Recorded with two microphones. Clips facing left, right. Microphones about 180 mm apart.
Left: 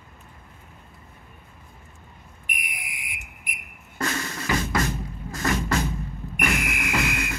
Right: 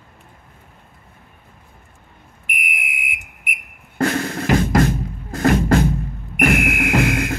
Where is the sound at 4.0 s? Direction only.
55° right (ahead or behind).